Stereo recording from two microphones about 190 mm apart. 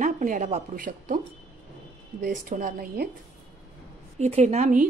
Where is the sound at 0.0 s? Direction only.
40° right (ahead or behind).